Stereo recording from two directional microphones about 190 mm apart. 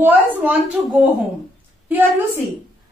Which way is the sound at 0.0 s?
10° right (ahead or behind).